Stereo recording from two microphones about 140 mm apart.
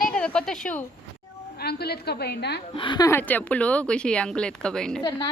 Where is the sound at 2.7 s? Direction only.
35° left (ahead or behind).